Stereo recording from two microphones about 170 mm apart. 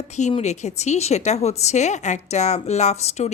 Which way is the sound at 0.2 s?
40° left (ahead or behind).